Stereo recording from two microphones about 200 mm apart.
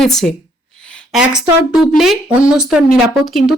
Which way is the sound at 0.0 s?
Centre (ahead or behind).